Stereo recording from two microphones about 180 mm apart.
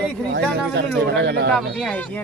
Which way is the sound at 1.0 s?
75° right (ahead or behind).